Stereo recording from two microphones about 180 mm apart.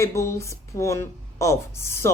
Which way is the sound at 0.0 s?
15° left (ahead or behind).